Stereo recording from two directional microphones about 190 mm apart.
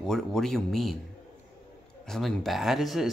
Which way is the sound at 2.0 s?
Centre (ahead or behind).